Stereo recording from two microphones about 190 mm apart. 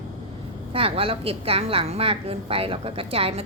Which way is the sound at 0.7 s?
30° right (ahead or behind).